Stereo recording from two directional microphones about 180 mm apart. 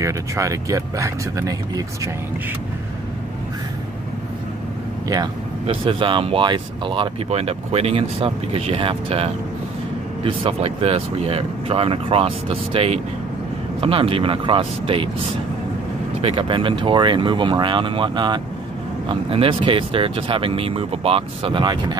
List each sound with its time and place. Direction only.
0.0 s speech: 15° right (ahead or behind)
5.0 s speech: 20° right (ahead or behind)